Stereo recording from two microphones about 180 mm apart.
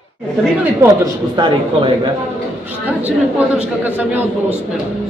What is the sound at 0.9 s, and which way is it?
A man's voice, 25° right (ahead or behind).